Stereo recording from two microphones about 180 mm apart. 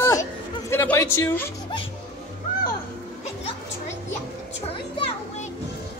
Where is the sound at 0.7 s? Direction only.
15° left (ahead or behind).